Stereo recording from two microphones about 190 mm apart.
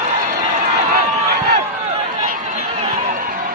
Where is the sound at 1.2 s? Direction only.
60° right (ahead or behind).